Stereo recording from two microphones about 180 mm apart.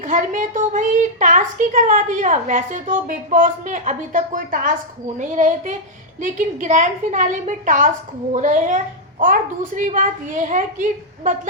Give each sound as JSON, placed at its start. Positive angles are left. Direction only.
{"t": 0.0, "sound": "a woman's voice", "side_deg": -45}